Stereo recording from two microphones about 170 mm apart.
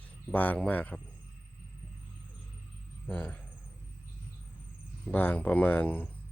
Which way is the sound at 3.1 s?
10° left (ahead or behind).